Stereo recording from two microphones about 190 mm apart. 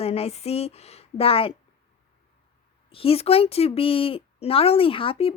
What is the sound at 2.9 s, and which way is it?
Speech, 30° left (ahead or behind).